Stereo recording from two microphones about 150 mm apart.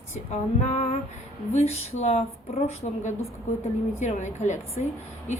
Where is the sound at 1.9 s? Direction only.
45° left (ahead or behind).